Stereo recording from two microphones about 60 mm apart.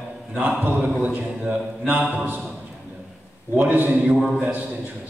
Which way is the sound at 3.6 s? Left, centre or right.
Right.